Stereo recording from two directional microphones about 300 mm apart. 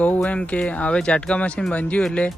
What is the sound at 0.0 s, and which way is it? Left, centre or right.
Speech, centre.